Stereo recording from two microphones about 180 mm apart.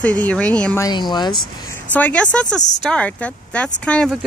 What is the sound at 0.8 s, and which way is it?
Speech, 25° left (ahead or behind).